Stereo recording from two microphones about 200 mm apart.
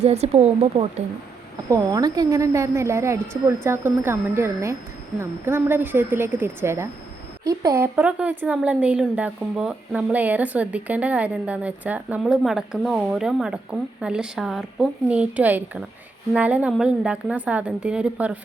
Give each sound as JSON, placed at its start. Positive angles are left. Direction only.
{"t": 0.0, "sound": "speech", "side_deg": -30}
{"t": 1.7, "sound": "a woman's voice", "side_deg": -20}